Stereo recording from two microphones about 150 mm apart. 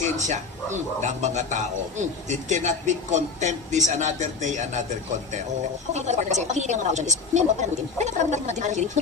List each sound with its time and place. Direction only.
0.0 s a man's voice: 50° right (ahead or behind)
5.9 s a man's voice: 50° right (ahead or behind)